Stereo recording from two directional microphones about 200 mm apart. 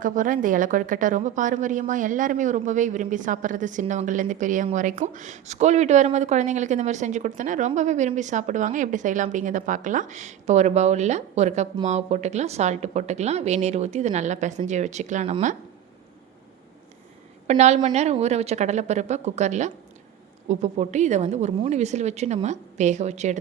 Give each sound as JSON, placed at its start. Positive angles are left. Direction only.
{"t": 0.0, "sound": "a woman's voice", "side_deg": -40}
{"t": 17.4, "sound": "a woman's voice", "side_deg": -35}